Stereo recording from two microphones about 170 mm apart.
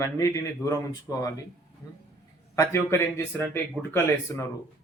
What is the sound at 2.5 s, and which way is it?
Speech, 15° left (ahead or behind).